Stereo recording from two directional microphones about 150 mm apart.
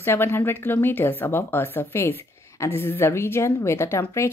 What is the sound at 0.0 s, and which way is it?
Speech, 15° left (ahead or behind).